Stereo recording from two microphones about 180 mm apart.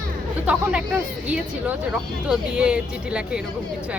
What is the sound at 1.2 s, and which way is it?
A woman's voice, 10° right (ahead or behind).